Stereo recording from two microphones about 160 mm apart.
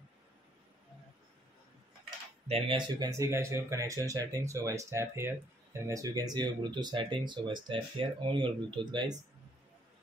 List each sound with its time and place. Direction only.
2.4 s speech: 35° right (ahead or behind)
3.0 s speech: 20° right (ahead or behind)